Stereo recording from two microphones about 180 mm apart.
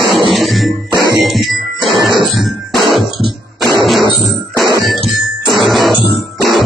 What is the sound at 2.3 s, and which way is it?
Music, centre (ahead or behind).